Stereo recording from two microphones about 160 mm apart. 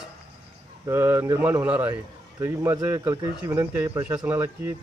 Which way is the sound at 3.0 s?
20° right (ahead or behind).